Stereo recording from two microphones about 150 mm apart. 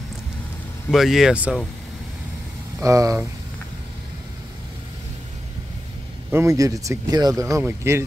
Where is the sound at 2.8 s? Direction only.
20° right (ahead or behind).